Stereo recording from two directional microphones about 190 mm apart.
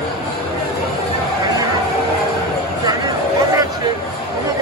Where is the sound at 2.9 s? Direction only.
20° right (ahead or behind).